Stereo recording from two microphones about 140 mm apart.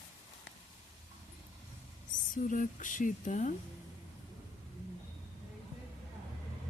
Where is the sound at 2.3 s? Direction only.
70° left (ahead or behind).